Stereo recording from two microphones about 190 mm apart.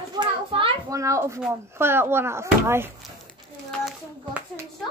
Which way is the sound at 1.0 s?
15° right (ahead or behind).